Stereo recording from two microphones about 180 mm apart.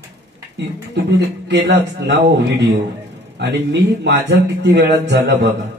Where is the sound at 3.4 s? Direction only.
75° right (ahead or behind).